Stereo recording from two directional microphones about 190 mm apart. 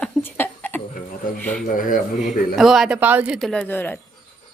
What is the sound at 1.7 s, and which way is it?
Speech, 45° left (ahead or behind).